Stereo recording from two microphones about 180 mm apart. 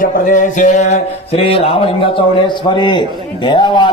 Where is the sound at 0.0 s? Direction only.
45° left (ahead or behind).